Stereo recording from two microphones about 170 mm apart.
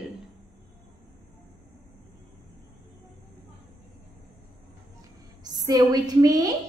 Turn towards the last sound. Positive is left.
turn(degrees=-20)  # may be behind; listen again after turning